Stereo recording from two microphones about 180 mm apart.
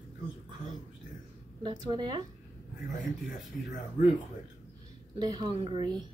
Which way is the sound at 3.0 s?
45° left (ahead or behind).